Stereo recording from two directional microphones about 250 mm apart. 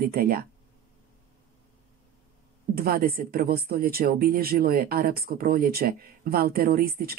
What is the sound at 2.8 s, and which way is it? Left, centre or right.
Speech, right.